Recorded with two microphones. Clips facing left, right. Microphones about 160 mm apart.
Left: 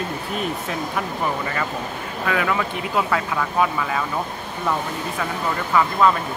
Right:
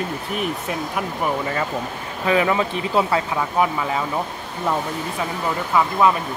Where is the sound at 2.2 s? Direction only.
20° right (ahead or behind).